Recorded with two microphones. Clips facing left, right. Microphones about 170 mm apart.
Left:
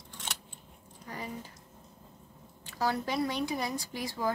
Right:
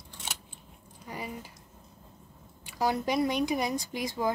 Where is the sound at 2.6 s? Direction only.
15° right (ahead or behind).